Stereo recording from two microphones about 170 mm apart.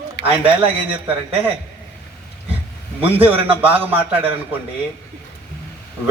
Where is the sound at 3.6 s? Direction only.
10° right (ahead or behind).